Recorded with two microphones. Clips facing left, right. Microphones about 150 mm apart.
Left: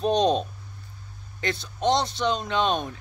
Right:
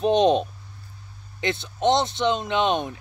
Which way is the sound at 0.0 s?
20° right (ahead or behind).